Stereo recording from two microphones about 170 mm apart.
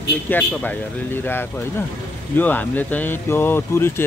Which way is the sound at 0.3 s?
10° left (ahead or behind).